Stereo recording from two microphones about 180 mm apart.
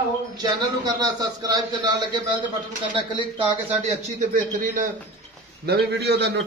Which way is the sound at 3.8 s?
45° right (ahead or behind).